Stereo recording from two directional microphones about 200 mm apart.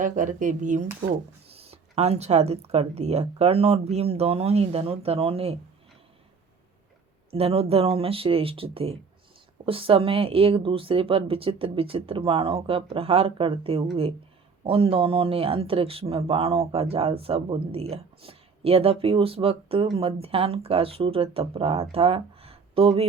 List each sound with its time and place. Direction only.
0.0 s speech: 40° right (ahead or behind)
7.3 s speech: 30° right (ahead or behind)